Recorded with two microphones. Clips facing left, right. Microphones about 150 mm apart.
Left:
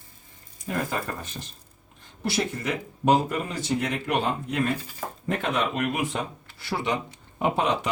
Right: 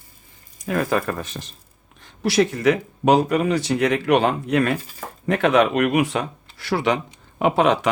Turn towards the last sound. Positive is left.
turn(degrees=-90)